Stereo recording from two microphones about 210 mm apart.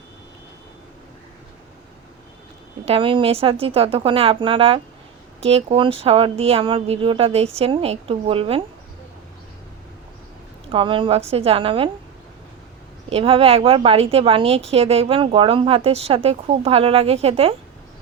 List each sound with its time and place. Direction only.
2.8 s speech: 25° right (ahead or behind)
10.7 s speech: 25° right (ahead or behind)
13.1 s speech: 30° right (ahead or behind)